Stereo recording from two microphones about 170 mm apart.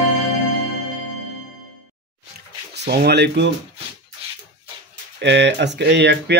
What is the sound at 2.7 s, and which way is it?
Speech, 75° right (ahead or behind).